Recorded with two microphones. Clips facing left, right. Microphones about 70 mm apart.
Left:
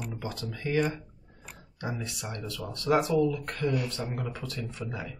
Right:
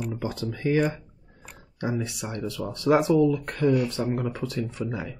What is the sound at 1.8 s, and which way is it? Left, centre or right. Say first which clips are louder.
Speech: right 7 dB; centre.